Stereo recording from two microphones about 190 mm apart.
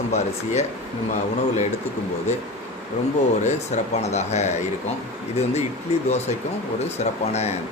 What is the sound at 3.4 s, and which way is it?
Speech, 35° left (ahead or behind).